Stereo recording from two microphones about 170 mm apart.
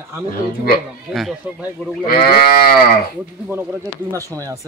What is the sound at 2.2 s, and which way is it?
Livestock, 65° left (ahead or behind).